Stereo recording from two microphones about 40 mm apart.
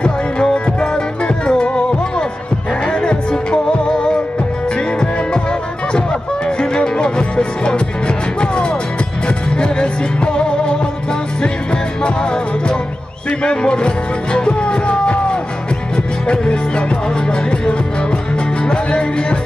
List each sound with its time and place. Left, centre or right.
0.0 s music: left
2.9 s music: left
16.3 s music: left